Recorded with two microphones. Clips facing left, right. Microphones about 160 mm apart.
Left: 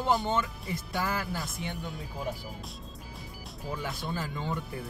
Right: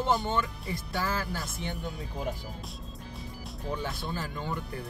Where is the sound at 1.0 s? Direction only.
15° left (ahead or behind).